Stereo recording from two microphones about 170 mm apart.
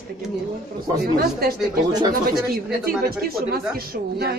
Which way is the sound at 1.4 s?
65° right (ahead or behind).